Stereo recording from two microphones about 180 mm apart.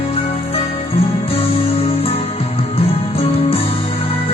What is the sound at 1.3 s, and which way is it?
Music, 35° left (ahead or behind).